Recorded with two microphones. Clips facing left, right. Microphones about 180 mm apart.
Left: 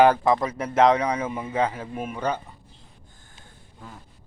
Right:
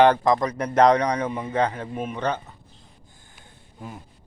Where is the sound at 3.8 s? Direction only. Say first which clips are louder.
Right 5 dB; 20° right (ahead or behind).